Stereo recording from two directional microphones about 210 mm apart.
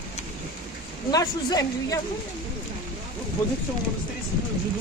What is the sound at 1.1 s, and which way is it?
Speech, 15° left (ahead or behind).